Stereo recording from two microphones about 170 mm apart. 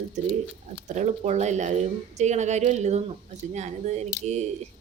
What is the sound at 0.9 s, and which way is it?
A woman's voice, 45° right (ahead or behind).